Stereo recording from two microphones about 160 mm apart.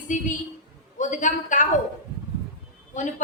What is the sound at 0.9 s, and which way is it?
Speech, 55° left (ahead or behind).